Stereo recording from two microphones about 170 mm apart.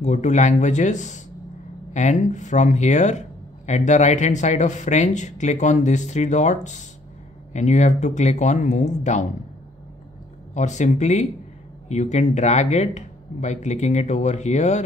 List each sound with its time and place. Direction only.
0.0 s speech: 45° left (ahead or behind)
10.5 s speech: 45° left (ahead or behind)